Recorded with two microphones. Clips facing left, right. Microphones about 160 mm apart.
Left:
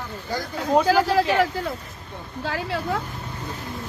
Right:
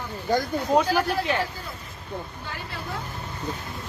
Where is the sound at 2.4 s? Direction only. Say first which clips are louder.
Left 9 dB; 90° left.